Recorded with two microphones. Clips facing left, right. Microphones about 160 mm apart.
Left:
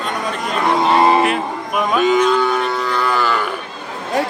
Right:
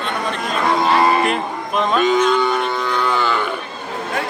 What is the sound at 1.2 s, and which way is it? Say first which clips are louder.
Speech: left 1 dB; 5° left (ahead or behind).